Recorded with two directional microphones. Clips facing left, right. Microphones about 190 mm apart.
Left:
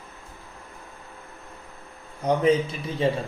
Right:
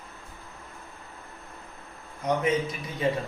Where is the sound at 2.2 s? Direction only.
30° left (ahead or behind).